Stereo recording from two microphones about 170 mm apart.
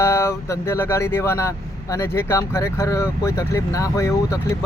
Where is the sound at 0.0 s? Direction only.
15° left (ahead or behind).